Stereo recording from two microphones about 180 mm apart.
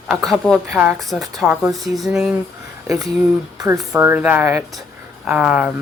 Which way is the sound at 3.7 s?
5° right (ahead or behind).